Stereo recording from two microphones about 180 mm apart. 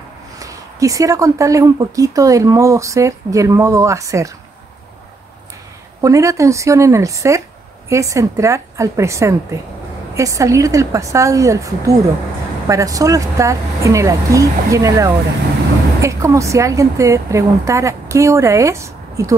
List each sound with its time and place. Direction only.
0.4 s speech: 20° right (ahead or behind)
5.9 s speech: 15° right (ahead or behind)